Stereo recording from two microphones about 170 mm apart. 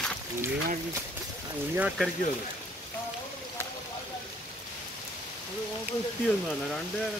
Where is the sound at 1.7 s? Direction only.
10° right (ahead or behind).